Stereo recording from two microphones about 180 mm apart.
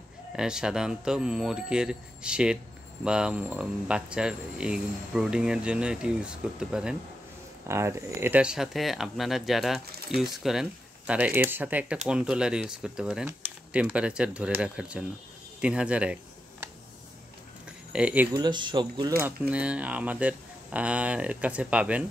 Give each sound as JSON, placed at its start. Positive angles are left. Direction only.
{"t": 0.4, "sound": "speech", "side_deg": -5}
{"t": 7.6, "sound": "speech", "side_deg": -15}
{"t": 17.9, "sound": "speech", "side_deg": -10}
{"t": 18.3, "sound": "speech", "side_deg": -25}